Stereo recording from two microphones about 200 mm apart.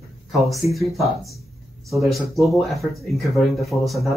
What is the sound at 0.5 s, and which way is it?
Speech, centre (ahead or behind).